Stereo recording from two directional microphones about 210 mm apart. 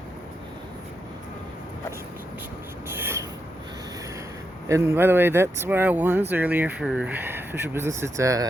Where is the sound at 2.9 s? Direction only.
10° right (ahead or behind).